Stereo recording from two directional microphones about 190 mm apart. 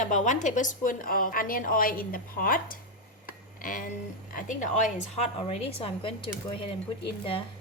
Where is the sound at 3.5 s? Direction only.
45° left (ahead or behind).